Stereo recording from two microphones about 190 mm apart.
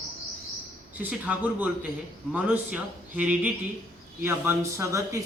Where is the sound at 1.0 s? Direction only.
10° right (ahead or behind).